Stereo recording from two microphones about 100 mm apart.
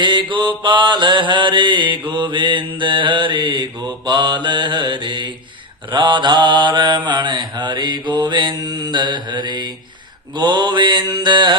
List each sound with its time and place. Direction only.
0.0 s mantra: 50° right (ahead or behind)